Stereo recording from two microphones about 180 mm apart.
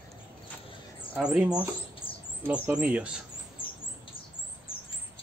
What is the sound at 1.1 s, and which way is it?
Speech, 5° right (ahead or behind).